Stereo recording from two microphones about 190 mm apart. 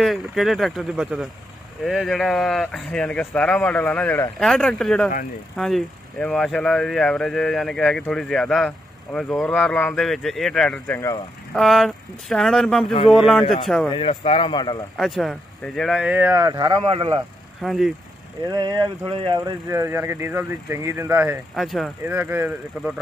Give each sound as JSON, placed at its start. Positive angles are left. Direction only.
{"t": 0.0, "sound": "speech", "side_deg": 0}
{"t": 11.5, "sound": "speech", "side_deg": 0}
{"t": 13.8, "sound": "speech", "side_deg": 30}
{"t": 15.0, "sound": "speech", "side_deg": 0}
{"t": 17.6, "sound": "speech", "side_deg": 0}
{"t": 18.5, "sound": "speech", "side_deg": -20}
{"t": 21.5, "sound": "speech", "side_deg": 0}
{"t": 22.0, "sound": "speech", "side_deg": -10}